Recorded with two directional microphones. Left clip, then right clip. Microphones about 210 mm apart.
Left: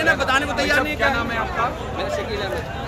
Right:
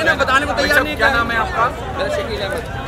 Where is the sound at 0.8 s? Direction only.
50° right (ahead or behind).